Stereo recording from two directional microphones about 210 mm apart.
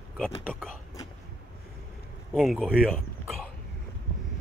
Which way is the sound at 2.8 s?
5° left (ahead or behind).